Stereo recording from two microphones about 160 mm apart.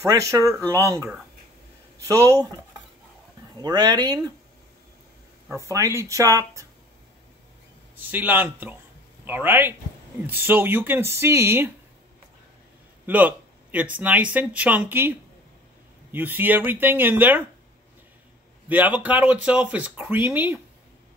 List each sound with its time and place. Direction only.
0.0 s speech: 20° right (ahead or behind)
2.0 s speech: 20° right (ahead or behind)
3.5 s speech: 25° right (ahead or behind)
5.6 s speech: 20° right (ahead or behind)
7.9 s speech: 10° right (ahead or behind)
13.0 s a sound: 10° right (ahead or behind)
13.9 s speech: 10° right (ahead or behind)
18.7 s speech: 10° right (ahead or behind)